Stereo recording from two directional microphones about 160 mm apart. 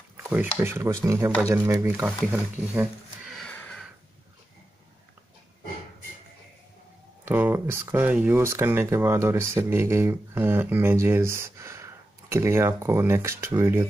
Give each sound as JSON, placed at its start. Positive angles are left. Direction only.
{"t": 0.3, "sound": "speech", "side_deg": -10}
{"t": 2.3, "sound": "a sound", "side_deg": -10}
{"t": 7.2, "sound": "speech", "side_deg": -15}